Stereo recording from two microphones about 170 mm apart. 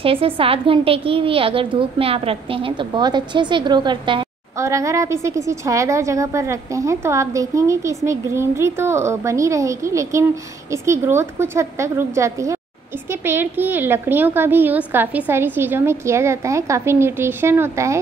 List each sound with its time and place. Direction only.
0.0 s a woman's voice: 35° right (ahead or behind)
4.6 s a woman's voice: 15° right (ahead or behind)